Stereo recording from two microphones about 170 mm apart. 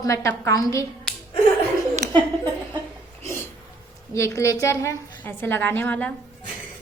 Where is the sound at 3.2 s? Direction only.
15° left (ahead or behind).